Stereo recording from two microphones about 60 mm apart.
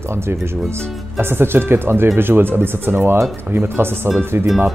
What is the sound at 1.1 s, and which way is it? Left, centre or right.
Speech, right.